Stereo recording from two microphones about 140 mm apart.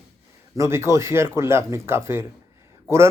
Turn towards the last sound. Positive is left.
turn(degrees=-20)  # may be behind; listen again after turning